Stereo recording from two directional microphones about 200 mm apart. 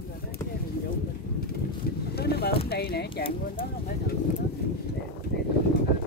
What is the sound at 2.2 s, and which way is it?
Speech, 50° left (ahead or behind).